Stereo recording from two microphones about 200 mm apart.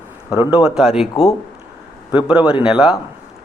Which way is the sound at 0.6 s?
Centre (ahead or behind).